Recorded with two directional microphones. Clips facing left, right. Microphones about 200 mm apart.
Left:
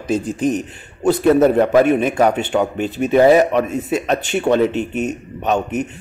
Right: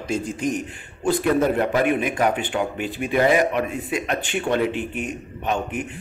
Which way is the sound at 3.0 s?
40° left (ahead or behind).